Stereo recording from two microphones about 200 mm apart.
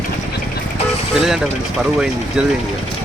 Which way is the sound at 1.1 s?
Centre (ahead or behind).